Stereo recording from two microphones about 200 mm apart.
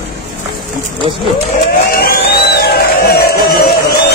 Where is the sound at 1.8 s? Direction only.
50° left (ahead or behind).